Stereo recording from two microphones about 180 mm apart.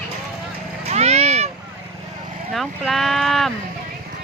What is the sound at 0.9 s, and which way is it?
Vehicle, 35° right (ahead or behind).